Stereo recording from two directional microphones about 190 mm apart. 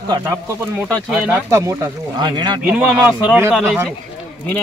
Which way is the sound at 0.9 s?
5° left (ahead or behind).